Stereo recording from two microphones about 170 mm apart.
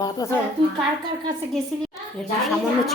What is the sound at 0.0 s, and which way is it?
Speech, 20° left (ahead or behind).